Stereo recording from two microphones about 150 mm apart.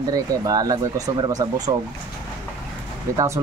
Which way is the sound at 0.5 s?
25° right (ahead or behind).